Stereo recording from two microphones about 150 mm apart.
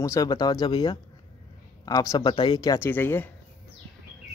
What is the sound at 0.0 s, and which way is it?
Speech, 20° left (ahead or behind).